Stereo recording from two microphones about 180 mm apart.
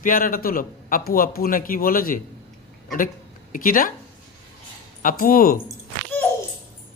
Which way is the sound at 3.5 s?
50° left (ahead or behind).